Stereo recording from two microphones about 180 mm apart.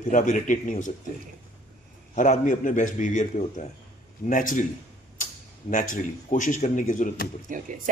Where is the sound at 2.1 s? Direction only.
45° left (ahead or behind).